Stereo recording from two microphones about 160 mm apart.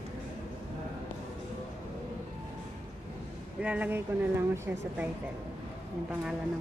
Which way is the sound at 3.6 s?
10° right (ahead or behind).